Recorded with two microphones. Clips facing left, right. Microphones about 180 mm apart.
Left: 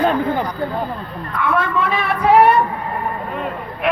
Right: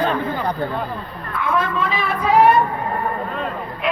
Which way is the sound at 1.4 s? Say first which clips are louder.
Left 2 dB; 65° left (ahead or behind).